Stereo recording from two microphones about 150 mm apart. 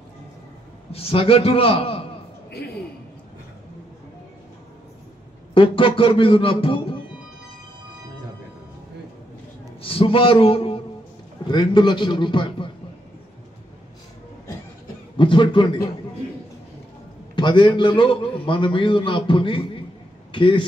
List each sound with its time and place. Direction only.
0.9 s a man's voice: 40° left (ahead or behind)
5.5 s a man's voice: 35° left (ahead or behind)
9.8 s a sound: 35° left (ahead or behind)
11.4 s a man's voice: 30° left (ahead or behind)
15.1 s a man's voice: 35° left (ahead or behind)
17.4 s a man's voice: 30° left (ahead or behind)